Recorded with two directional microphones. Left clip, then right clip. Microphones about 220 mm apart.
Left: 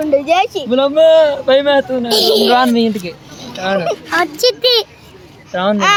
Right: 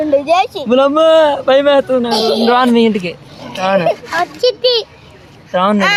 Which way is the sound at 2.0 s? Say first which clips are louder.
Left 2 dB; 55° left (ahead or behind).